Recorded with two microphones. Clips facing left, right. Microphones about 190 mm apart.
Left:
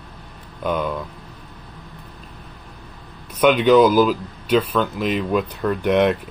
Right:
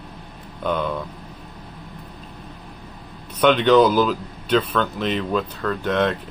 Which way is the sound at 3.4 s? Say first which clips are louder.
Left 1 dB; 10° left (ahead or behind).